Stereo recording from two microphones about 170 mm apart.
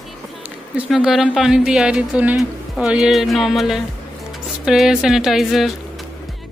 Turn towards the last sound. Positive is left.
turn(degrees=0)  # may be behind; listen again after turning